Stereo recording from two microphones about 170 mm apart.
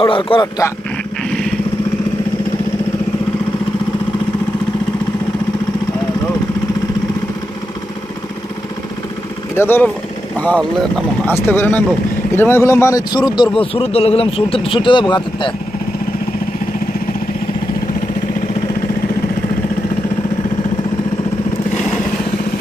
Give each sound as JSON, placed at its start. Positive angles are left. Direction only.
{"t": 0.0, "sound": "a man's voice", "side_deg": 30}
{"t": 9.6, "sound": "a man's voice", "side_deg": 10}